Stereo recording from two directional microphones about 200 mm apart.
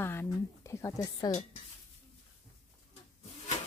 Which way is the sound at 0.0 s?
10° left (ahead or behind).